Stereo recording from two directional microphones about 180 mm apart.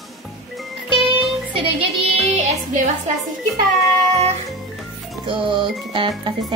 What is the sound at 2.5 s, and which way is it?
A woman's voice, 40° right (ahead or behind).